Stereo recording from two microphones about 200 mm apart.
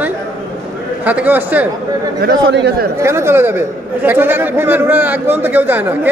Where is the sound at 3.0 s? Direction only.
15° right (ahead or behind).